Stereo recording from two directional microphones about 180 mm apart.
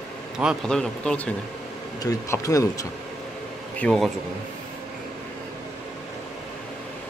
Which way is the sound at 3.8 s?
5° left (ahead or behind).